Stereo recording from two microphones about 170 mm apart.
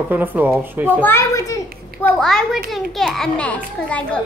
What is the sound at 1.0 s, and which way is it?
A child's voice, 15° left (ahead or behind).